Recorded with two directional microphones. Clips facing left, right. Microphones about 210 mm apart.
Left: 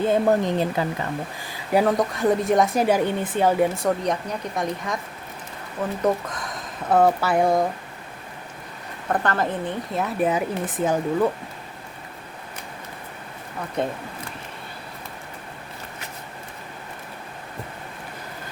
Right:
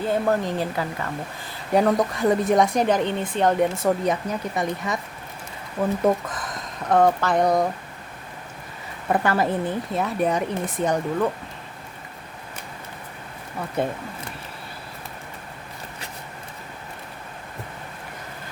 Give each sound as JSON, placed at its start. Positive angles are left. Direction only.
{"t": 0.0, "sound": "speech", "side_deg": 20}
{"t": 1.5, "sound": "a woman's voice", "side_deg": 5}
{"t": 6.2, "sound": "a woman's voice", "side_deg": 0}
{"t": 9.0, "sound": "a woman's voice", "side_deg": -10}
{"t": 13.8, "sound": "a woman's voice", "side_deg": -5}